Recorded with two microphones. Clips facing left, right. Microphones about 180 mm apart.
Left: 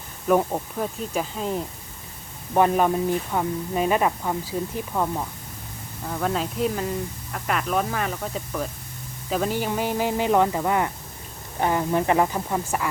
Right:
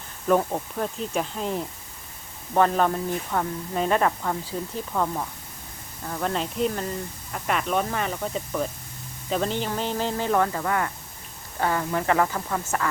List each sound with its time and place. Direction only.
0.3 s speech: 10° left (ahead or behind)
2.6 s speech: 10° left (ahead or behind)